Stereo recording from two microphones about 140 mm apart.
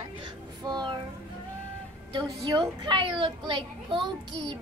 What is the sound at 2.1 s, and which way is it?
A child's voice, 30° right (ahead or behind).